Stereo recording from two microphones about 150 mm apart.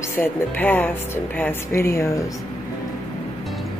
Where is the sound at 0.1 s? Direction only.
15° left (ahead or behind).